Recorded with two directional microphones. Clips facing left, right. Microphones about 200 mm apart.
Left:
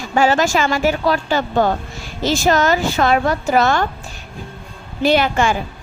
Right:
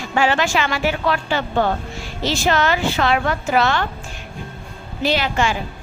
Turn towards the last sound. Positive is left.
turn(degrees=50)  # may be behind; listen again after turning